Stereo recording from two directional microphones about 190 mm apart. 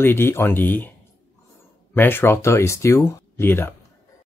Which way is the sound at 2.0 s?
10° left (ahead or behind).